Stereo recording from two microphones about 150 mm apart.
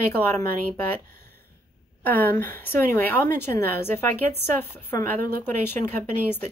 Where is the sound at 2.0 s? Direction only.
15° left (ahead or behind).